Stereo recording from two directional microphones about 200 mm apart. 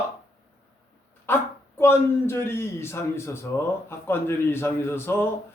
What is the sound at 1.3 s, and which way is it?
A man's voice, 10° left (ahead or behind).